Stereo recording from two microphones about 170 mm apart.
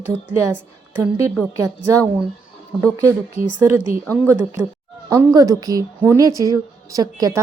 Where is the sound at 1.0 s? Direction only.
15° right (ahead or behind).